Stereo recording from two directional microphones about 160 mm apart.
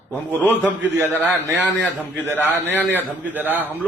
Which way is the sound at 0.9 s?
20° right (ahead or behind).